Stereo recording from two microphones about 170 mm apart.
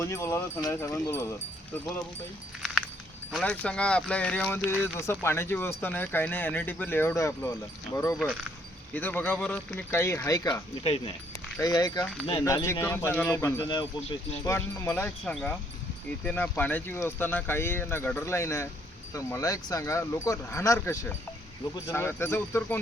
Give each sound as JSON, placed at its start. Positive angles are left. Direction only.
{"t": 0.0, "sound": "speech", "side_deg": 15}
{"t": 2.6, "sound": "a sound", "side_deg": 0}
{"t": 3.3, "sound": "speech", "side_deg": 5}
{"t": 10.8, "sound": "speech", "side_deg": 35}
{"t": 11.6, "sound": "speech", "side_deg": 20}
{"t": 15.2, "sound": "speech", "side_deg": 5}